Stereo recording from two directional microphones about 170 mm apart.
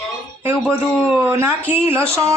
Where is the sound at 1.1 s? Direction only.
15° right (ahead or behind).